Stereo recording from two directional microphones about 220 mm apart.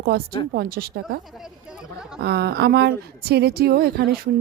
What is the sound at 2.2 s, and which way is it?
Speech, 45° right (ahead or behind).